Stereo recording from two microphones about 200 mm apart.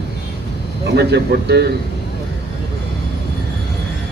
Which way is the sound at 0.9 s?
55° right (ahead or behind).